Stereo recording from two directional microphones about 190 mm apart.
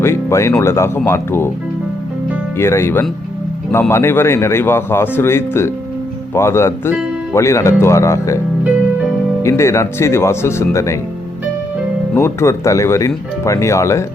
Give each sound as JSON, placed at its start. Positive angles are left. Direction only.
{"t": 0.0, "sound": "a man's voice", "side_deg": 15}
{"t": 2.6, "sound": "a man's voice", "side_deg": 15}
{"t": 9.4, "sound": "a man's voice", "side_deg": 15}
{"t": 12.1, "sound": "a man's voice", "side_deg": 15}